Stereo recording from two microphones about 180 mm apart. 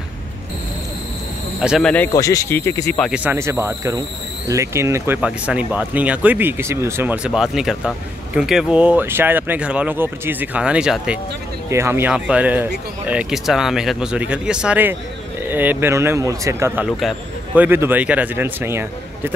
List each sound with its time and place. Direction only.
1.6 s speech: centre (ahead or behind)
2.1 s speech: 20° left (ahead or behind)
3.1 s speech: 10° right (ahead or behind)